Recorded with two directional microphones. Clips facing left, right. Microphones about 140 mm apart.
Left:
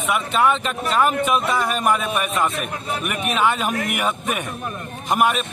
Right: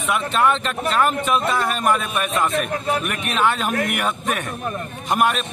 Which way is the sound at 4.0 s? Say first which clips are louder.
Even; 10° left (ahead or behind).